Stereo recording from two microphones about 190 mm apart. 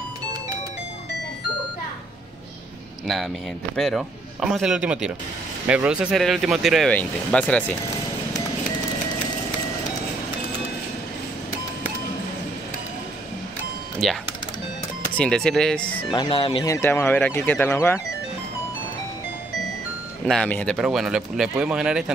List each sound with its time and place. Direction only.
3.7 s speech: centre (ahead or behind)
14.0 s speech: centre (ahead or behind)
16.1 s speech: 25° left (ahead or behind)
16.6 s speech: 15° left (ahead or behind)
20.2 s speech: 5° left (ahead or behind)